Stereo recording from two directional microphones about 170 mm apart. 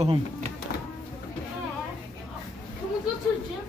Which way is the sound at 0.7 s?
60° left (ahead or behind).